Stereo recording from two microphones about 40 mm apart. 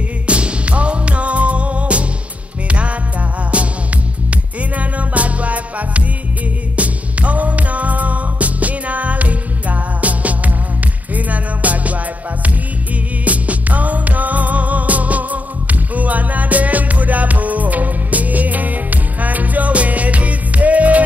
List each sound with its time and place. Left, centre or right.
0.3 s music: right
13.2 s music: right